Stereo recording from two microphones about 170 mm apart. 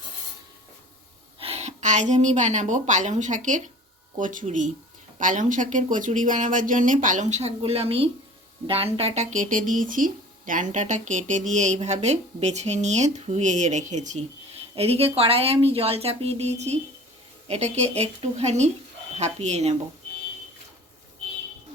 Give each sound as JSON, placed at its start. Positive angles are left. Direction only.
{"t": 1.4, "sound": "a woman's voice", "side_deg": -40}